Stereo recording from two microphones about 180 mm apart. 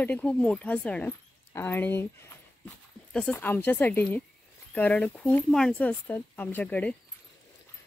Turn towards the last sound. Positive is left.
turn(degrees=10)  # may be behind; listen again after turning